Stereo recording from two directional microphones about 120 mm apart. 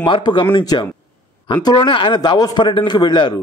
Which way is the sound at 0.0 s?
40° left (ahead or behind).